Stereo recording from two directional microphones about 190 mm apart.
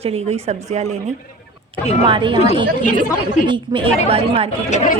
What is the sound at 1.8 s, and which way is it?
Speech, 35° left (ahead or behind).